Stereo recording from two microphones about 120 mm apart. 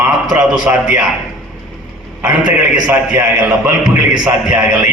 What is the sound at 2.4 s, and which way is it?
A man's voice, 35° right (ahead or behind).